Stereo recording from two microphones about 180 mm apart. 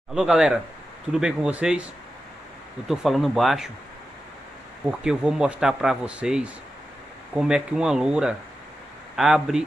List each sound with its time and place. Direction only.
0.1 s speech: 5° right (ahead or behind)
2.9 s speech: centre (ahead or behind)
4.8 s speech: 5° right (ahead or behind)